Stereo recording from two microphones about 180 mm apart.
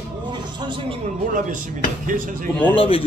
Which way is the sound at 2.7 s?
30° left (ahead or behind).